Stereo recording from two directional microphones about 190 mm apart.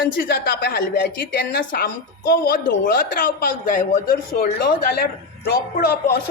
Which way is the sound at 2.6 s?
70° left (ahead or behind).